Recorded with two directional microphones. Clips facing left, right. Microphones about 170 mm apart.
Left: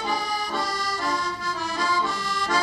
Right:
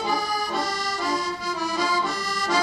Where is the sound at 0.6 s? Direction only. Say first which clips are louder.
Right 1 dB; 20° right (ahead or behind).